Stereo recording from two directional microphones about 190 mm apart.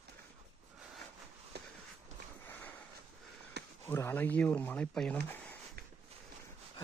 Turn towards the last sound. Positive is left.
turn(degrees=5)  # may be behind; listen again after turning